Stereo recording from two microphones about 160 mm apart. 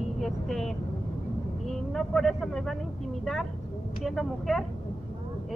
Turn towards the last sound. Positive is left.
turn(degrees=0)  # may be behind; listen again after turning